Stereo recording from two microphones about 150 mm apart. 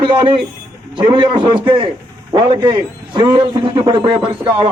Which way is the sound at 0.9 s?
30° right (ahead or behind).